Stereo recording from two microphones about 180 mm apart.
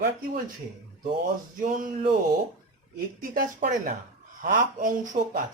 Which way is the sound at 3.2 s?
50° right (ahead or behind).